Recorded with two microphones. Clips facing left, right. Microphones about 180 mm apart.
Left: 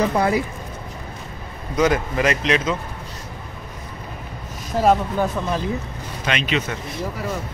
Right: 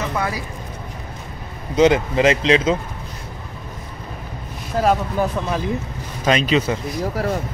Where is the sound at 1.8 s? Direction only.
25° right (ahead or behind).